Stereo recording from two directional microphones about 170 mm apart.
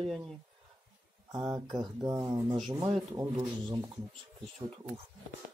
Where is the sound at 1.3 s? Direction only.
25° right (ahead or behind).